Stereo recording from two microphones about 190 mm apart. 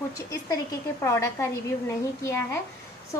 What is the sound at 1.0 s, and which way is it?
A woman's voice, 15° left (ahead or behind).